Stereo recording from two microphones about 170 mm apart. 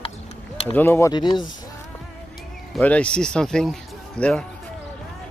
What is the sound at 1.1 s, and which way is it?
Speech, 25° left (ahead or behind).